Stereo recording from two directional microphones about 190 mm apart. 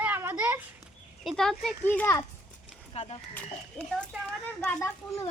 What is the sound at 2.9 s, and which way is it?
Speech, 35° left (ahead or behind).